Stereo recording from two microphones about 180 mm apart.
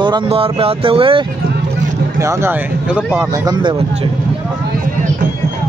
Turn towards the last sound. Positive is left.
turn(degrees=-25)  # may be behind; listen again after turning